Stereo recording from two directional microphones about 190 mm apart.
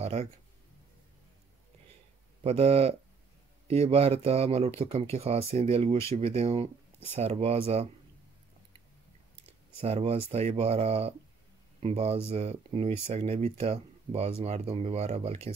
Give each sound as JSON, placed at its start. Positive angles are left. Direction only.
{"t": 0.0, "sound": "speech", "side_deg": -35}
{"t": 2.4, "sound": "speech", "side_deg": -30}
{"t": 9.8, "sound": "speech", "side_deg": -35}